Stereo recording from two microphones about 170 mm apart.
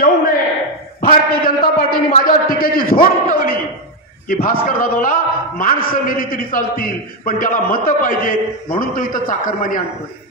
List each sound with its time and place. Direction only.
1.0 s a man's voice: 55° left (ahead or behind)